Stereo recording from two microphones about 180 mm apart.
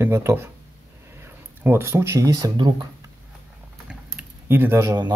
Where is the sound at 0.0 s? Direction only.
15° right (ahead or behind).